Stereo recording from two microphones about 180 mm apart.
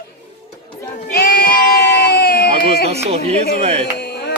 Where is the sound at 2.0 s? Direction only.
60° left (ahead or behind).